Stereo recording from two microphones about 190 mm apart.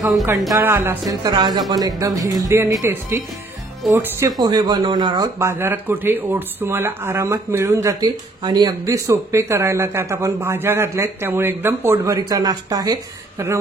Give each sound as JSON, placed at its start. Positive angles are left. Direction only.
{"t": 0.6, "sound": "speech", "side_deg": -10}